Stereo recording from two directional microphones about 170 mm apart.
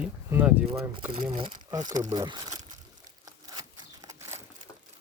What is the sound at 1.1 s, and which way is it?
Speech, 30° right (ahead or behind).